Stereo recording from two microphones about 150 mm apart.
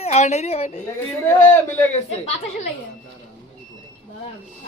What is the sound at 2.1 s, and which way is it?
Speech, 45° left (ahead or behind).